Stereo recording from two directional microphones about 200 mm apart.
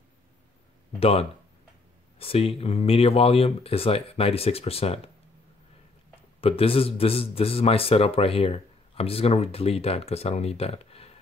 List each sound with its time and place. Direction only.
0.9 s a man's voice: 30° left (ahead or behind)
6.4 s a man's voice: 30° left (ahead or behind)